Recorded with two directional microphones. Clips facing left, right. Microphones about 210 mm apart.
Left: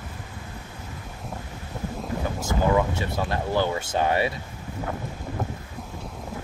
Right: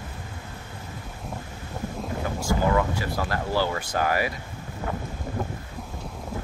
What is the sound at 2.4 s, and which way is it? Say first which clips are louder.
Speech: left 1 dB; 20° left (ahead or behind).